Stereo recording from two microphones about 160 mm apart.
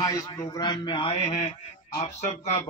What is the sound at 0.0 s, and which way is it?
A man's voice, 20° left (ahead or behind).